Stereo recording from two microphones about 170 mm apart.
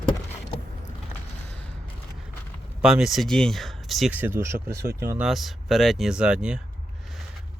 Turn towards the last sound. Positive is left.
turn(degrees=-5)  # may be behind; listen again after turning